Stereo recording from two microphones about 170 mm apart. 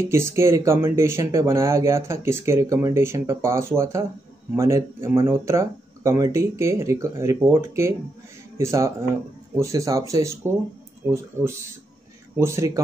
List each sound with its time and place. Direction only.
0.0 s speech: 15° right (ahead or behind)